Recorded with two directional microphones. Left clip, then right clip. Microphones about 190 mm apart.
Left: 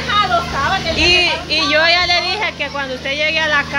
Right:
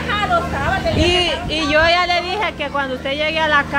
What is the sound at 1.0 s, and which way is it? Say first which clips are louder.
Speech: left 7 dB; 20° right (ahead or behind).